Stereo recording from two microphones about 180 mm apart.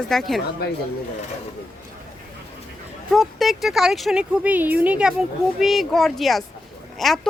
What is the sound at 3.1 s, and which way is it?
A woman's voice, centre (ahead or behind).